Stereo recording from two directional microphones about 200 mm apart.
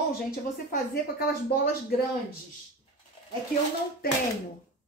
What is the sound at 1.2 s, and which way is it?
Speech, 45° left (ahead or behind).